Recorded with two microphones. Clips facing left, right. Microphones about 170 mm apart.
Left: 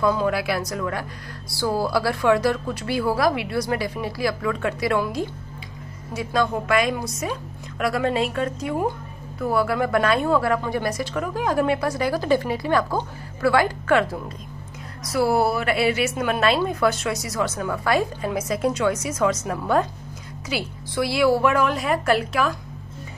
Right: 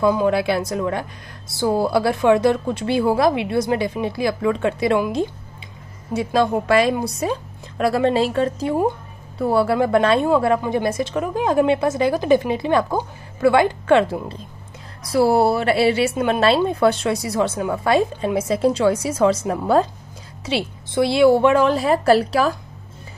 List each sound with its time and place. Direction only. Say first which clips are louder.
0.0 s a woman's voice: right 4 dB; 20° right (ahead or behind)